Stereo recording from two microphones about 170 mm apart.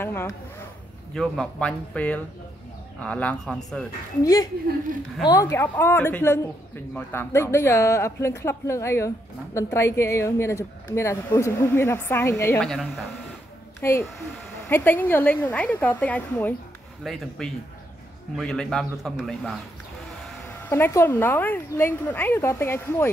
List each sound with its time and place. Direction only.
0.0 s a sound: 15° left (ahead or behind)
1.1 s a man's voice: centre (ahead or behind)
4.2 s a woman's voice: 20° left (ahead or behind)
12.6 s a man's voice: centre (ahead or behind)
13.7 s a child's voice: 15° left (ahead or behind)
17.0 s a man's voice: centre (ahead or behind)
20.6 s speech: 15° left (ahead or behind)